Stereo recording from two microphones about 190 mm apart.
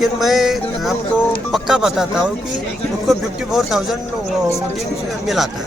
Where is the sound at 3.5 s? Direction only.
Centre (ahead or behind).